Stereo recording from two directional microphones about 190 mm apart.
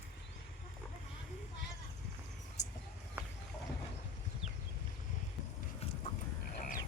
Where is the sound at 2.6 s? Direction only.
60° left (ahead or behind).